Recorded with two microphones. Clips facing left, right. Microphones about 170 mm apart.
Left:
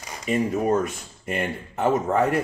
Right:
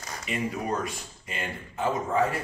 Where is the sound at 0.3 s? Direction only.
45° left (ahead or behind).